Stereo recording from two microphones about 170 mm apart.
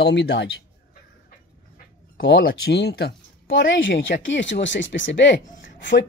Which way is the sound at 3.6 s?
90° left.